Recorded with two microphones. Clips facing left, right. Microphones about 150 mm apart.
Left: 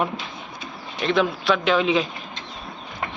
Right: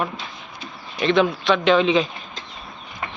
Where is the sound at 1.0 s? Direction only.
Centre (ahead or behind).